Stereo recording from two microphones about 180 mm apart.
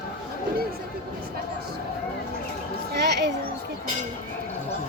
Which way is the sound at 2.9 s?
70° right (ahead or behind).